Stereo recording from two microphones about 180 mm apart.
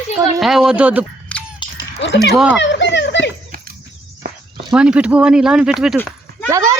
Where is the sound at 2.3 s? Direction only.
5° right (ahead or behind).